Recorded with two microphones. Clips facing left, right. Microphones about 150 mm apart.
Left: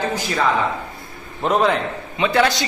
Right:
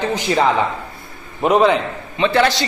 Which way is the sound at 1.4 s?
5° right (ahead or behind).